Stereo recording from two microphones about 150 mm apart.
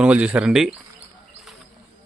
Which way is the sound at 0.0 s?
10° right (ahead or behind).